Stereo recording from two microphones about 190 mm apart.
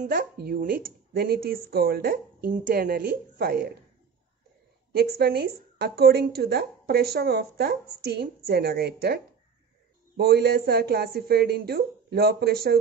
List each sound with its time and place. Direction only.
0.0 s speech: 45° right (ahead or behind)
4.9 s a woman's voice: 55° right (ahead or behind)